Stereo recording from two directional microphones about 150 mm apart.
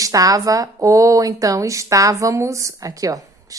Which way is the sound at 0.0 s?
25° right (ahead or behind).